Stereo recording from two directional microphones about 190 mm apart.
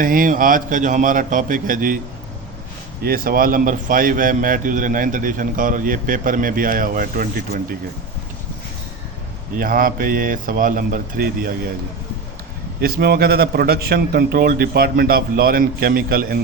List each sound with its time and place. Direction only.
0.0 s a man's voice: 45° right (ahead or behind)
3.0 s a man's voice: 50° right (ahead or behind)
9.6 s a man's voice: 50° right (ahead or behind)
12.8 s a man's voice: 55° right (ahead or behind)